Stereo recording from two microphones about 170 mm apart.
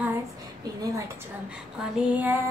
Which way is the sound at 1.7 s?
5° right (ahead or behind).